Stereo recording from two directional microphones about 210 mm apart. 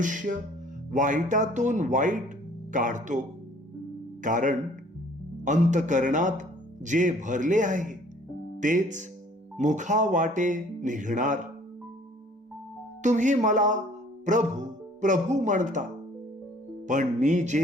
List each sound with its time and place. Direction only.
0.0 s speech: 40° right (ahead or behind)
13.0 s speech: 35° right (ahead or behind)